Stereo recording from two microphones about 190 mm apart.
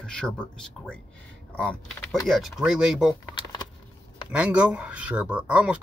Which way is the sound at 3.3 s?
25° left (ahead or behind).